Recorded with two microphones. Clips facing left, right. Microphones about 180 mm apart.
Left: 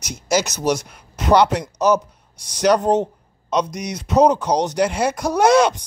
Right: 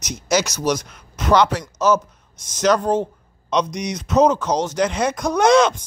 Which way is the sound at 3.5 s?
5° left (ahead or behind).